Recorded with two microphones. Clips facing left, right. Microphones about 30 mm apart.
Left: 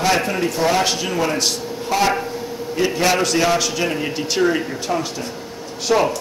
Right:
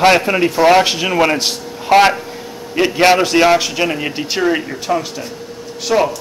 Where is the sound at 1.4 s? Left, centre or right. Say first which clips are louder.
Right 1 dB; right.